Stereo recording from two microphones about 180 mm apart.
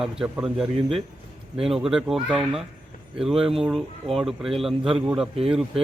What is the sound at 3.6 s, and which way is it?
A man's voice, centre (ahead or behind).